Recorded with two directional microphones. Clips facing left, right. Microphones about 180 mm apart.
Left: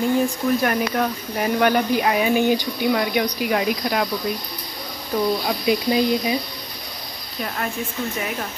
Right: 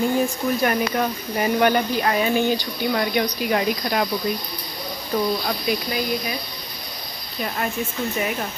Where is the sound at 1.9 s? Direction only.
10° left (ahead or behind).